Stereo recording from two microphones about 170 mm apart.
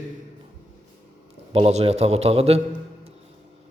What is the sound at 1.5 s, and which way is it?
A man's voice, 35° right (ahead or behind).